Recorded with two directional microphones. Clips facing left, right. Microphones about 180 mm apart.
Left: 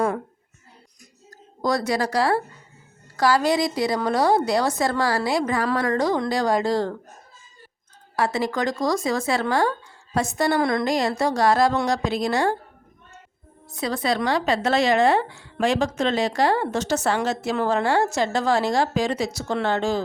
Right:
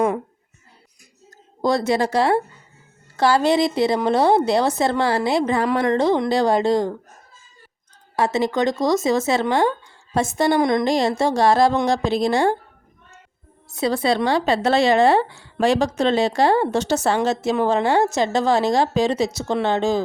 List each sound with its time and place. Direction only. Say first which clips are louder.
1.6 s speech: right 4 dB; 25° right (ahead or behind)
8.1 s speech: right 3 dB; 20° right (ahead or behind)
13.7 s speech: right 4 dB; 30° right (ahead or behind)